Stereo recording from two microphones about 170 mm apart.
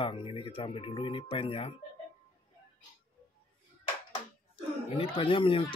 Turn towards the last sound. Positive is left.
turn(degrees=30)  # may be behind; listen again after turning